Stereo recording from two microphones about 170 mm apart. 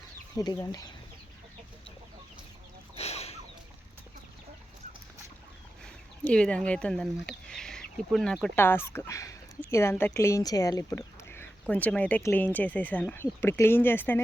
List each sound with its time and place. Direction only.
0.3 s speech: 20° left (ahead or behind)
2.9 s chicken: 40° left (ahead or behind)
6.2 s speech: 5° left (ahead or behind)